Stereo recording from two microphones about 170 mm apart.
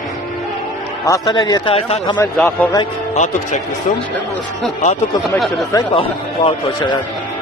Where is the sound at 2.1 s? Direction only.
10° left (ahead or behind).